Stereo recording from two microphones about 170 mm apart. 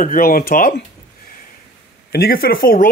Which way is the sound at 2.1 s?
65° left (ahead or behind).